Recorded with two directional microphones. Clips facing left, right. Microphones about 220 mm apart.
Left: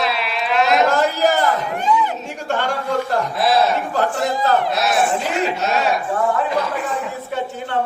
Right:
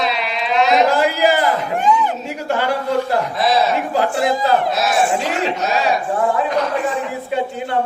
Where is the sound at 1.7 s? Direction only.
45° right (ahead or behind).